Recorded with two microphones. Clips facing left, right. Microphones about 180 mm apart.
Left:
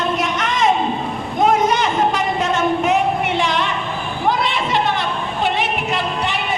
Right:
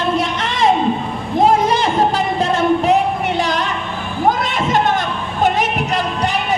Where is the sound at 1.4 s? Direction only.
30° right (ahead or behind).